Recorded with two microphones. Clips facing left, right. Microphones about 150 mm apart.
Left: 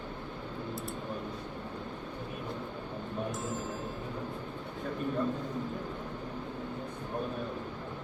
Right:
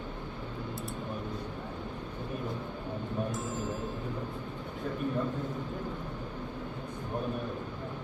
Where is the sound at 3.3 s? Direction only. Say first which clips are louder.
Right 1 dB; centre (ahead or behind).